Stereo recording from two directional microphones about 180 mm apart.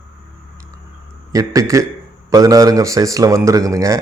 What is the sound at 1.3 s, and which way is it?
Speech, 20° right (ahead or behind).